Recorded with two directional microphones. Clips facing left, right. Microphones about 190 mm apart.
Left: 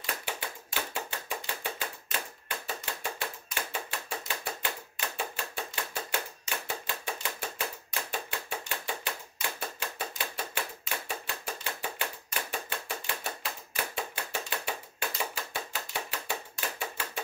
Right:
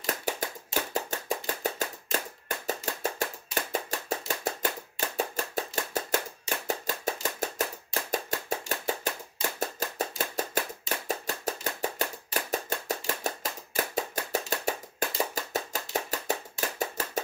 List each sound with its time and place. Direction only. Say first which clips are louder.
0.0 s tap: right 5 dB; 40° right (ahead or behind)
2.4 s clapping: right 5 dB; 40° right (ahead or behind)
5.1 s chopping: right 7 dB; 40° right (ahead or behind)
6.7 s a sound: right 7 dB; 40° right (ahead or behind)
9.6 s chopping: right 8 dB; 40° right (ahead or behind)
11.1 s a sound: right 6 dB; 40° right (ahead or behind)